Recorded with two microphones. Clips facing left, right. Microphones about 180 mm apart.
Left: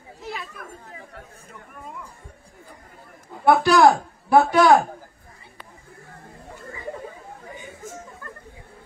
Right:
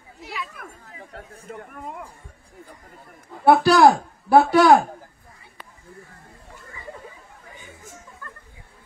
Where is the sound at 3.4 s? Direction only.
35° right (ahead or behind).